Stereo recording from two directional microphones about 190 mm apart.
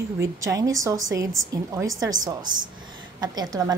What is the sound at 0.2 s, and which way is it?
A woman's voice, 15° right (ahead or behind).